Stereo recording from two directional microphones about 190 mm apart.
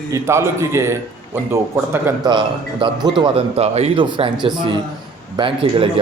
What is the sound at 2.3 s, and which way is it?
Speech, 25° right (ahead or behind).